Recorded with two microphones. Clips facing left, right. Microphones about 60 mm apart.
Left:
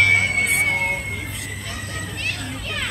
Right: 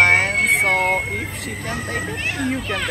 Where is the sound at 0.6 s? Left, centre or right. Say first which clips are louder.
Right 4 dB; right.